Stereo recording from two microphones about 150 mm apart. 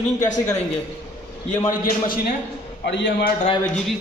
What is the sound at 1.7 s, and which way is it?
Speech, 65° left (ahead or behind).